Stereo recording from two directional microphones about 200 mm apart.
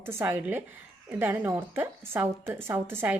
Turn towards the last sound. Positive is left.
turn(degrees=-10)  # may be behind; listen again after turning